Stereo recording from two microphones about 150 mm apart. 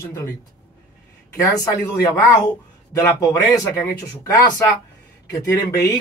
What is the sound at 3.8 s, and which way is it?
Speech, 20° left (ahead or behind).